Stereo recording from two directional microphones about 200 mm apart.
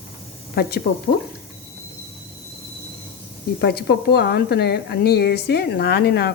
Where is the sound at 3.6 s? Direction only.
55° left (ahead or behind).